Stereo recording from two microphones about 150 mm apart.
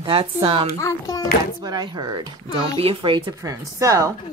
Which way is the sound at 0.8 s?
20° left (ahead or behind).